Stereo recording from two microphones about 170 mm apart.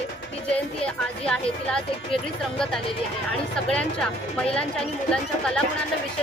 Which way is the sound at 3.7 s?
5° left (ahead or behind).